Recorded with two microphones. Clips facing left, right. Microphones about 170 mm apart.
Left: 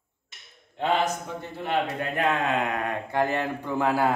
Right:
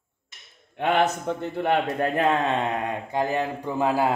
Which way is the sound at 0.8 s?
60° right (ahead or behind).